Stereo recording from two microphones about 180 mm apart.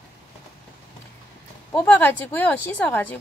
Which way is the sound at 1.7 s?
10° left (ahead or behind).